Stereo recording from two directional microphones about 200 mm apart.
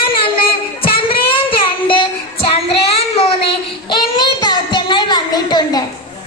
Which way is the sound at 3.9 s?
20° left (ahead or behind).